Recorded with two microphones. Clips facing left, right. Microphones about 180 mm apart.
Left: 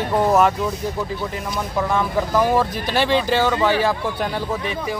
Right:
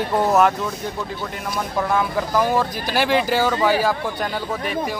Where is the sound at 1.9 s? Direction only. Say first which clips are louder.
Left 2 dB; centre (ahead or behind).